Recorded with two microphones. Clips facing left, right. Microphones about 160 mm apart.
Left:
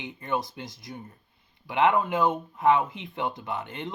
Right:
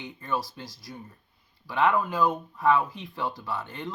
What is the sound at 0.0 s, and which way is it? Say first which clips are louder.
Speech: left 1 dB; 20° left (ahead or behind).